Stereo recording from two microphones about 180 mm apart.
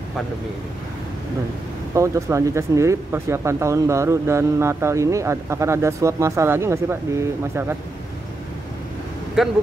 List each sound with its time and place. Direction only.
2.0 s speech: 15° right (ahead or behind)
9.4 s speech: centre (ahead or behind)